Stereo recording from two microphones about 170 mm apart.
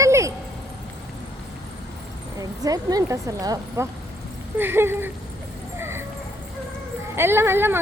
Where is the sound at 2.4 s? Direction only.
20° right (ahead or behind).